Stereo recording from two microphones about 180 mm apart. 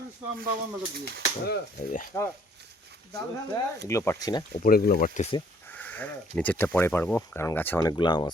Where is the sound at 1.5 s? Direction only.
50° left (ahead or behind).